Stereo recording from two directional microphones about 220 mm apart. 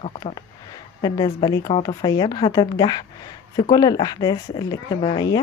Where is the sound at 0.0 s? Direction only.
20° left (ahead or behind).